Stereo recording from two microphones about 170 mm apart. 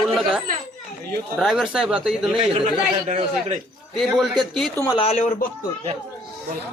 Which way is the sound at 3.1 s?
40° right (ahead or behind).